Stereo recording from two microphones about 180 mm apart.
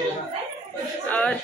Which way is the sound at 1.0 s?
5° left (ahead or behind).